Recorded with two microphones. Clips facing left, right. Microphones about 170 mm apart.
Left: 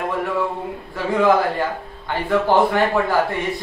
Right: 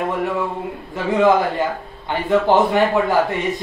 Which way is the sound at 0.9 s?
20° right (ahead or behind).